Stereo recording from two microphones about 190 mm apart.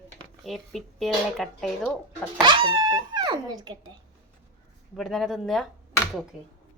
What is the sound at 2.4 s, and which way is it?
Speech, 25° right (ahead or behind).